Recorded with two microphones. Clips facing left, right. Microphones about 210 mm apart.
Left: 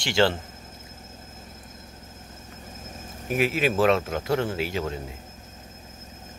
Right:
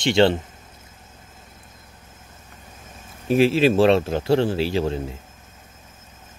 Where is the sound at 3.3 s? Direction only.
30° right (ahead or behind).